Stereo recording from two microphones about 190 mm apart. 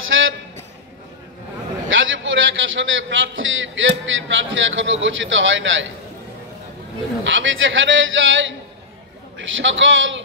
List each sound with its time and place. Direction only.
0.1 s a sound: 90° right
1.9 s a man's voice: 90° right
7.2 s a man's voice: 90° right